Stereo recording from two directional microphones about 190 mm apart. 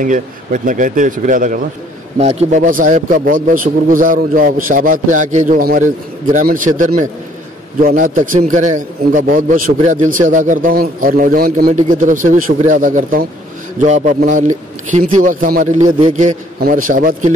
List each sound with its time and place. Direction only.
0.0 s a man's voice: 45° right (ahead or behind)
2.1 s a man's voice: 35° right (ahead or behind)